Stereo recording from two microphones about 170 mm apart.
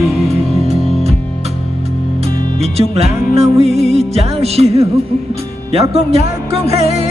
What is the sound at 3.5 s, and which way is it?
Music, 35° right (ahead or behind).